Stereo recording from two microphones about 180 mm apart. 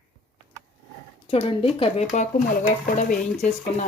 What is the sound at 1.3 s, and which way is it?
Speech, 30° left (ahead or behind).